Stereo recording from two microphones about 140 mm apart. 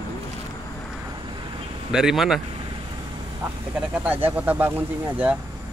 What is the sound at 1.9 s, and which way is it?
Speech, 5° right (ahead or behind).